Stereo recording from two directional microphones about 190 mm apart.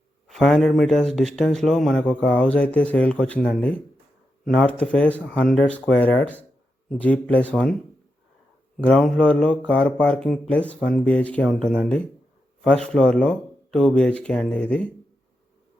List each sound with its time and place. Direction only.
0.3 s speech: centre (ahead or behind)
8.8 s speech: 5° left (ahead or behind)